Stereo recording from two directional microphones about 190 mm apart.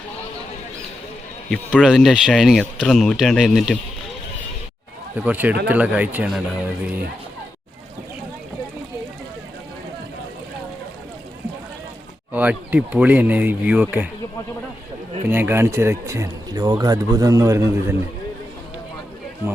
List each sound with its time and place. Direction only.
1.5 s speech: centre (ahead or behind)
5.1 s speech: 10° right (ahead or behind)
12.3 s speech: 10° right (ahead or behind)
15.3 s speech: 10° right (ahead or behind)